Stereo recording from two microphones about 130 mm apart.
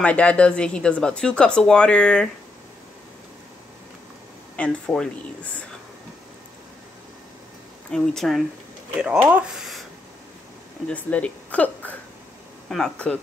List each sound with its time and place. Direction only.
0.0 s speech: 10° left (ahead or behind)
4.6 s speech: 5° left (ahead or behind)
7.9 s speech: 5° left (ahead or behind)
9.0 s speech: 10° right (ahead or behind)
10.9 s speech: 10° left (ahead or behind)